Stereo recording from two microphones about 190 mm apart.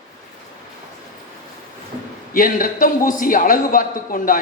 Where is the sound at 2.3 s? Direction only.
45° left (ahead or behind).